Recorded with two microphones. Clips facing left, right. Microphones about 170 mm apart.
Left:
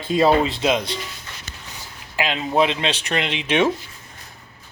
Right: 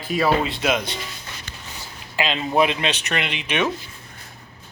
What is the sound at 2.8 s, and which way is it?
Speech, 30° left (ahead or behind).